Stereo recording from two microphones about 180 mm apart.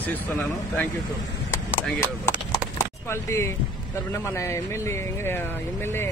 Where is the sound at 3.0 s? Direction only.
15° left (ahead or behind).